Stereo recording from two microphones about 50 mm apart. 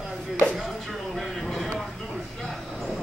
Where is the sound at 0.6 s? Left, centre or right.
Centre.